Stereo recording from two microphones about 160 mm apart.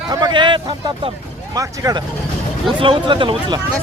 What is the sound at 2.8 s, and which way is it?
Speech, 30° right (ahead or behind).